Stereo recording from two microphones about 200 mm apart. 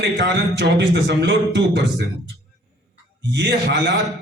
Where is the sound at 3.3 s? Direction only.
60° right (ahead or behind).